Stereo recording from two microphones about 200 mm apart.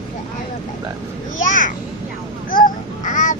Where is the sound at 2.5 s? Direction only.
40° left (ahead or behind).